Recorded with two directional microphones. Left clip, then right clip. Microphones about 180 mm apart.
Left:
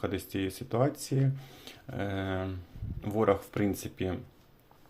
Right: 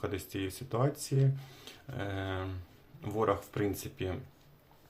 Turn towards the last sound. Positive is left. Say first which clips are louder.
# left 2 dB
turn(degrees=25)  # may be behind; listen again after turning